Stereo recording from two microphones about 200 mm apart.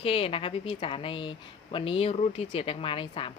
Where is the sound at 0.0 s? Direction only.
30° left (ahead or behind).